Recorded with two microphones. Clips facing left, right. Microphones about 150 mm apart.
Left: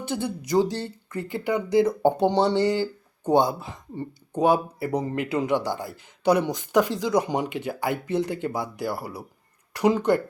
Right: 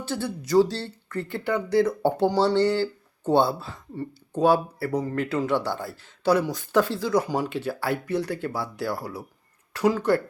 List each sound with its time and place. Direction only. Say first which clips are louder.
0.0 s speech: left 1 dB; 15° left (ahead or behind)